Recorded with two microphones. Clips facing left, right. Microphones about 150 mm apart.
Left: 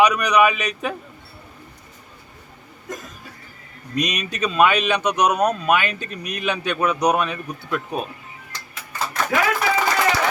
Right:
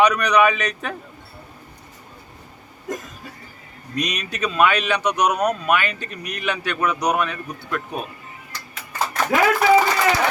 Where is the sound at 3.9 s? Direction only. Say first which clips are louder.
Left 2 dB; 20° left (ahead or behind).